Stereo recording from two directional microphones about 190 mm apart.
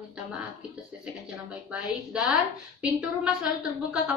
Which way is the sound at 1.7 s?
5° right (ahead or behind).